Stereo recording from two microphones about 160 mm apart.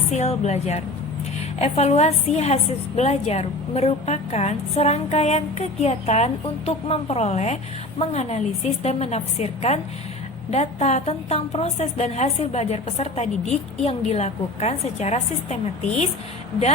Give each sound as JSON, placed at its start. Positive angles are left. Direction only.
{"t": 0.1, "sound": "a woman's voice", "side_deg": 45}